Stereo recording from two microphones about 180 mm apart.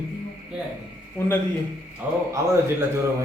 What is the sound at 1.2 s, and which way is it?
Speech, 15° left (ahead or behind).